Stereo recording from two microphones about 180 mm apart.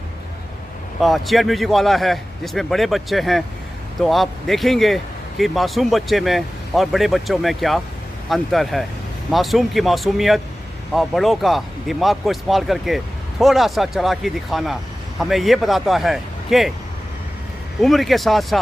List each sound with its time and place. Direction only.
1.0 s speech: centre (ahead or behind)
17.8 s speech: centre (ahead or behind)